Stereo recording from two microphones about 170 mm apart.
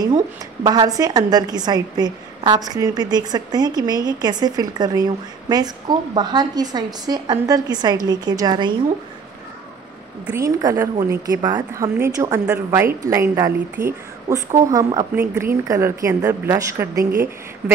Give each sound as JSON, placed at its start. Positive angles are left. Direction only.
{"t": 0.7, "sound": "a woman's voice", "side_deg": -25}
{"t": 10.2, "sound": "a woman's voice", "side_deg": -15}